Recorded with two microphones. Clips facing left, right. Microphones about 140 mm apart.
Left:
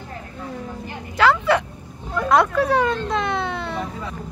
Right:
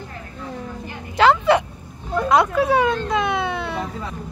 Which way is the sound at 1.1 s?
20° right (ahead or behind).